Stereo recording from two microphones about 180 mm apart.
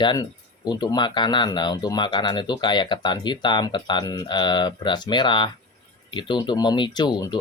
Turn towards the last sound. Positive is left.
turn(degrees=25)  # may be behind; listen again after turning